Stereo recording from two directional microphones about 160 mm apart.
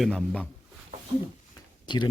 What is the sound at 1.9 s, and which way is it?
Speech, 30° left (ahead or behind).